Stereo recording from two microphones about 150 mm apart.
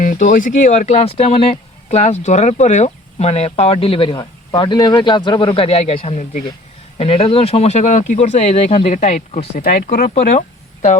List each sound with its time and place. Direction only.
0.0 s speech: 60° left (ahead or behind)
9.6 s speech: 80° left